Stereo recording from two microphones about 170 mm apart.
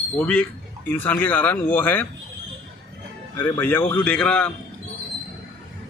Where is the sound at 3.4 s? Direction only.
15° left (ahead or behind).